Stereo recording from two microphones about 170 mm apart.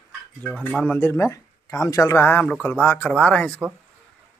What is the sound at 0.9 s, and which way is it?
Speech, 15° left (ahead or behind).